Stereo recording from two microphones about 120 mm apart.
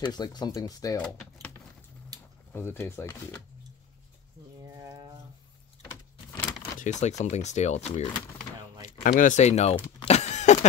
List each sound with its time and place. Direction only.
0.0 s speech: 35° left (ahead or behind)
0.9 s speech: 10° left (ahead or behind)
2.5 s speech: 20° left (ahead or behind)
4.7 s a sound: 30° right (ahead or behind)
6.8 s speech: 80° left; by 8.1 s 65° left (ahead or behind)
9.2 s speech: 80° left